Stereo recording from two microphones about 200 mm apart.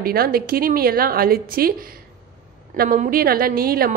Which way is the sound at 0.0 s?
50° right (ahead or behind).